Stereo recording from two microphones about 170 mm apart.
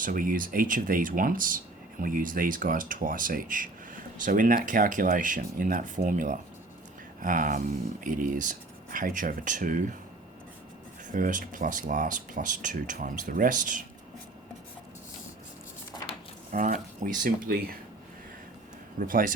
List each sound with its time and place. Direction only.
0.0 s speech: 55° right (ahead or behind)
11.1 s speech: 50° right (ahead or behind)
16.5 s speech: 50° right (ahead or behind)
18.9 s speech: 55° right (ahead or behind)